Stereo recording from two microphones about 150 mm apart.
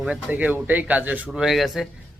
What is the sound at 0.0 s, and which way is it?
Speech, 10° right (ahead or behind).